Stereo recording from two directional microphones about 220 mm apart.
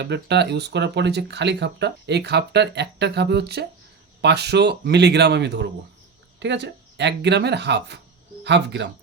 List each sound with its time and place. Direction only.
0.0 s speech: 50° right (ahead or behind)